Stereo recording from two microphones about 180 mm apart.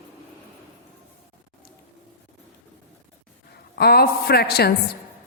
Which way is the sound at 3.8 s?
60° left (ahead or behind).